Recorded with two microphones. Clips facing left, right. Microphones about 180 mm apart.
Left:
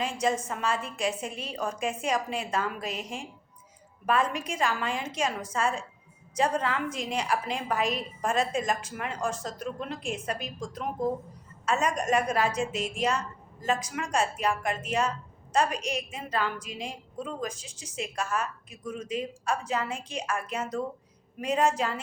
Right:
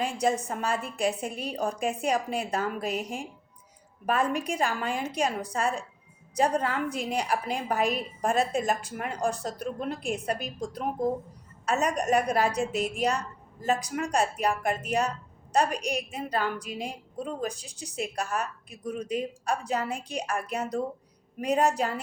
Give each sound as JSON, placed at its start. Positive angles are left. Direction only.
{"t": 0.0, "sound": "a woman's voice", "side_deg": -35}